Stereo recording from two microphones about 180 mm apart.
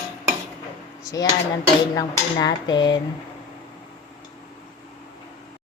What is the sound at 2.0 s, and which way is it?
A woman's voice, 20° left (ahead or behind).